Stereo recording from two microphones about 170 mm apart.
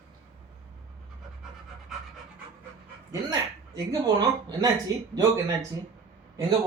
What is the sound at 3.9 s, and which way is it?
Speech, 20° right (ahead or behind).